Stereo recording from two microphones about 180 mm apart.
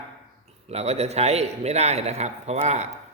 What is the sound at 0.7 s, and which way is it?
A man's voice, 35° right (ahead or behind).